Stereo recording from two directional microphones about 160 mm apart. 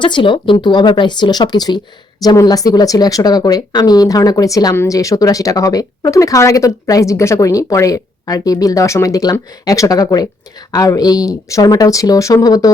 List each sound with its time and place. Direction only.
0.0 s speech: 30° left (ahead or behind)